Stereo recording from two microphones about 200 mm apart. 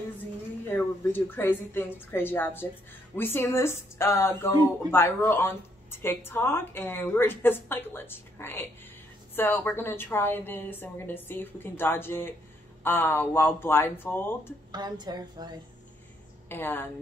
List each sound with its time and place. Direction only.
0.7 s speech: 10° left (ahead or behind)
14.7 s a woman's voice: 20° right (ahead or behind)
16.4 s speech: 10° left (ahead or behind)